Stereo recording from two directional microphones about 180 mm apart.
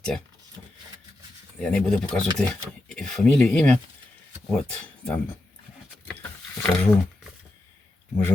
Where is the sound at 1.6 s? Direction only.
5° left (ahead or behind).